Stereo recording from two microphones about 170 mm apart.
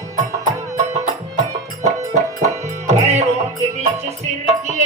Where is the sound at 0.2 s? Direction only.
40° right (ahead or behind).